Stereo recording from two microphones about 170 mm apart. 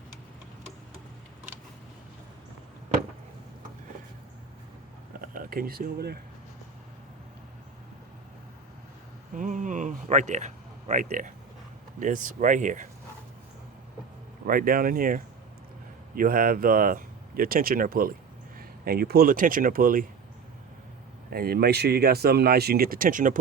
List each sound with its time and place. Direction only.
5.2 s speech: 60° right (ahead or behind)
9.3 s a sound: 50° right (ahead or behind)
11.9 s speech: 50° right (ahead or behind)
14.4 s speech: 55° right (ahead or behind)
21.3 s speech: 65° right (ahead or behind)